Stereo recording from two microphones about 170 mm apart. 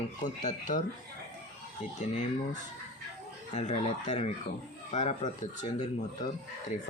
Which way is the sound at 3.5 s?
45° left (ahead or behind).